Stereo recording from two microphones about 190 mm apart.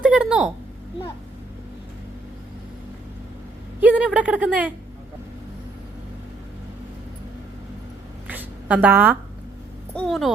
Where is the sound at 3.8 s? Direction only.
5° right (ahead or behind).